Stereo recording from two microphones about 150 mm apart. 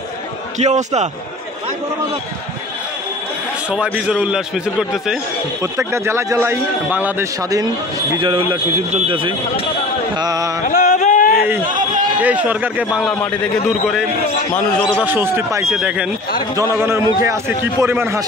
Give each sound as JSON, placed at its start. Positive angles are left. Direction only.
{"t": 0.6, "sound": "a man's voice", "side_deg": -50}
{"t": 3.7, "sound": "a man's voice", "side_deg": -5}
{"t": 5.6, "sound": "a man's voice", "side_deg": -20}
{"t": 8.2, "sound": "speech", "side_deg": -30}
{"t": 10.1, "sound": "a sound", "side_deg": -25}
{"t": 10.7, "sound": "a sound", "side_deg": 75}
{"t": 12.2, "sound": "a man's voice", "side_deg": -10}
{"t": 13.0, "sound": "a man's voice", "side_deg": 5}
{"t": 15.0, "sound": "a man's voice", "side_deg": -15}